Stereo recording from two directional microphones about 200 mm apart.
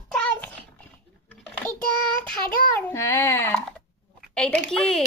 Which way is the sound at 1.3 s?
10° left (ahead or behind).